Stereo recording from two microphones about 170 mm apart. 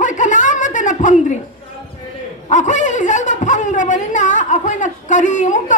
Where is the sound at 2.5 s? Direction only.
45° left (ahead or behind).